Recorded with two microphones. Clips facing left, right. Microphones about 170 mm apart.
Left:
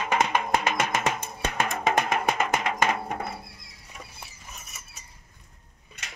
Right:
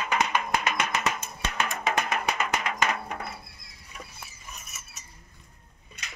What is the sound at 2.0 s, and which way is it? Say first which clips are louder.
Music: left 3 dB; 25° left (ahead or behind).